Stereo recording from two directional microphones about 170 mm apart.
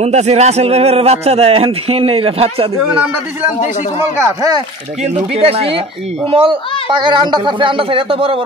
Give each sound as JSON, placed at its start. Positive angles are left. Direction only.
{"t": 0.0, "sound": "speech", "side_deg": -40}
{"t": 4.2, "sound": "speech", "side_deg": -20}
{"t": 5.4, "sound": "speech", "side_deg": -35}